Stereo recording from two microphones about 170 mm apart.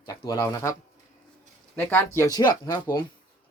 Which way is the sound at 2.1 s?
20° left (ahead or behind).